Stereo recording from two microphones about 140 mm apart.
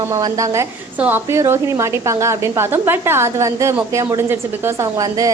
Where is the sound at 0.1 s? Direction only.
25° right (ahead or behind).